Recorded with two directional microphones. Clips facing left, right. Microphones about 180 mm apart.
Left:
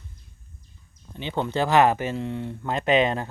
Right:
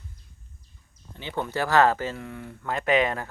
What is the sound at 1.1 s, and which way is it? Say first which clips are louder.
Speech: left 3 dB; 20° left (ahead or behind).